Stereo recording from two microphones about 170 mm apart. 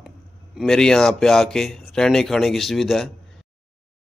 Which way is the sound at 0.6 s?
5° left (ahead or behind).